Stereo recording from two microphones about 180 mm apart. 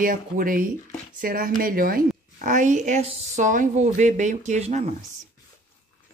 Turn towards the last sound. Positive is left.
turn(degrees=-40)  # may be behind; listen again after turning